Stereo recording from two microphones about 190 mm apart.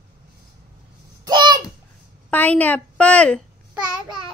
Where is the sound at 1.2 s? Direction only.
20° right (ahead or behind).